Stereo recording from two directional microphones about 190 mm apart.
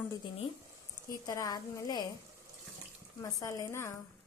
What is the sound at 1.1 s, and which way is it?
Speech, 20° left (ahead or behind).